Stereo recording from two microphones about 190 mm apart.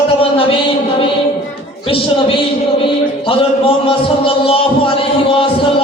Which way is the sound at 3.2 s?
30° left (ahead or behind).